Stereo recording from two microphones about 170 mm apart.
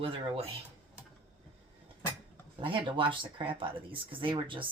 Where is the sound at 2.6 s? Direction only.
30° right (ahead or behind).